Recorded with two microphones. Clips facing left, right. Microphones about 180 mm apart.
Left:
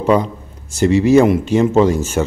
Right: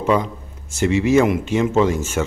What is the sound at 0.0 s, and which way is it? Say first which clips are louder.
Speech: left 4 dB; 35° left (ahead or behind).